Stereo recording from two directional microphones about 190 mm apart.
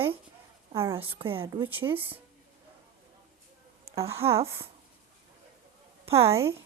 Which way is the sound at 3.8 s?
15° right (ahead or behind).